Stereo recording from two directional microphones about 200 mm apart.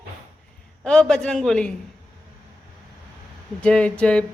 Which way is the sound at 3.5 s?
5° left (ahead or behind).